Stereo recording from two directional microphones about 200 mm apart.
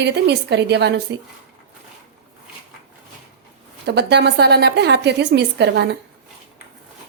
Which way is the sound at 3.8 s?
55° right (ahead or behind).